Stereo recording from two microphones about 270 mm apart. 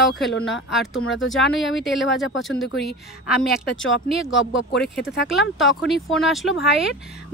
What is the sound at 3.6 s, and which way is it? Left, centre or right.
Speech, left.